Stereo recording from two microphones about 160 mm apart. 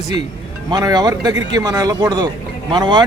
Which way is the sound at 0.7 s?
25° right (ahead or behind).